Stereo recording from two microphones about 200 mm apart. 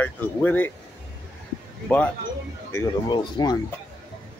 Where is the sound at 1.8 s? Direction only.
5° left (ahead or behind).